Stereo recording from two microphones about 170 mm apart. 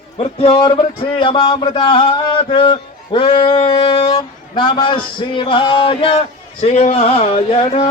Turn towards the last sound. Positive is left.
turn(degrees=35)  # may be behind; listen again after turning